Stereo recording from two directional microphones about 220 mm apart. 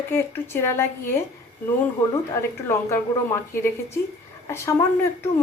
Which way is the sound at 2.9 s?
10° left (ahead or behind).